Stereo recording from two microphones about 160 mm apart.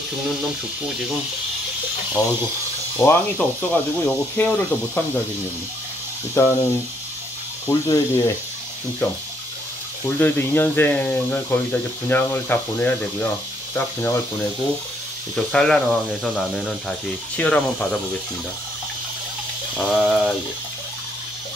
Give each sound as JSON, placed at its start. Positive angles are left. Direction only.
{"t": 3.0, "sound": "speech", "side_deg": 10}
{"t": 6.4, "sound": "speech", "side_deg": 20}
{"t": 7.6, "sound": "speech", "side_deg": 15}
{"t": 10.0, "sound": "speech", "side_deg": 15}
{"t": 15.3, "sound": "speech", "side_deg": 5}
{"t": 19.8, "sound": "speech", "side_deg": 0}